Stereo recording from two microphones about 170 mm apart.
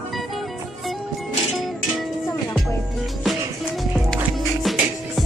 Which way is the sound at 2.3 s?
15° left (ahead or behind).